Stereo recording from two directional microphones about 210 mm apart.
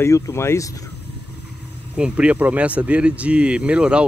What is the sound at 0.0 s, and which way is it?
Speech, 15° left (ahead or behind).